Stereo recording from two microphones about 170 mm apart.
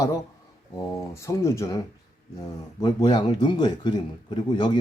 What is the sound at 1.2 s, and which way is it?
A man's voice, 15° left (ahead or behind).